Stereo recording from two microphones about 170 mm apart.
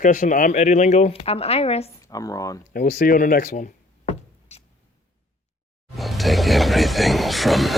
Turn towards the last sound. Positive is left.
turn(degrees=0)  # may be behind; listen again after turning